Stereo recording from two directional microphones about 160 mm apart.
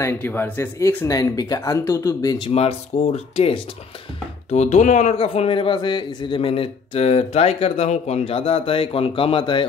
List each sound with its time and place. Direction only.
0.0 s speech: 15° left (ahead or behind)
2.5 s a man's voice: 40° left (ahead or behind)